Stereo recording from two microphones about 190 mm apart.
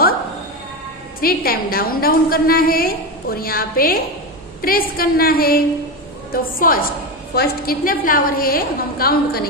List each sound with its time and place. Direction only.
1.2 s a woman's voice: 50° left (ahead or behind)